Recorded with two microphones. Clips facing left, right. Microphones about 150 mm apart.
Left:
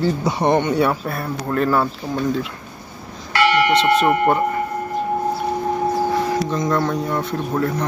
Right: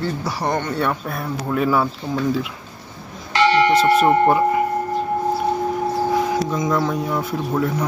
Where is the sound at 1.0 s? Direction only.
Centre (ahead or behind).